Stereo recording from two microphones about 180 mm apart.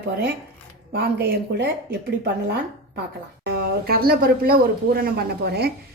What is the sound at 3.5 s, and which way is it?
A woman's voice, 55° right (ahead or behind).